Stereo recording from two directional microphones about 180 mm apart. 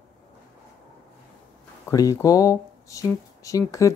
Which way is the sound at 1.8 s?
20° left (ahead or behind).